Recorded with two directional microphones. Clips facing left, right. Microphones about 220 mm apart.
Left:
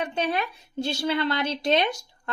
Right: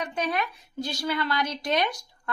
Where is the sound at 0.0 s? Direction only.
30° left (ahead or behind).